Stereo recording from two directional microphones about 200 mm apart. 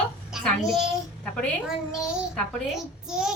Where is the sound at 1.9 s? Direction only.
5° right (ahead or behind).